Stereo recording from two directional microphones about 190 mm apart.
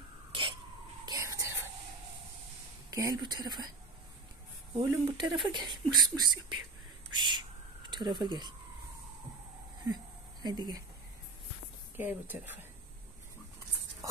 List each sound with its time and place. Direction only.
0.3 s a sound: 25° right (ahead or behind)
1.0 s whispering: 15° right (ahead or behind)
2.9 s a woman's voice: 15° right (ahead or behind)
4.7 s a woman's voice: 25° right (ahead or behind)
10.4 s a woman's voice: 20° right (ahead or behind)
12.0 s a woman's voice: 10° right (ahead or behind)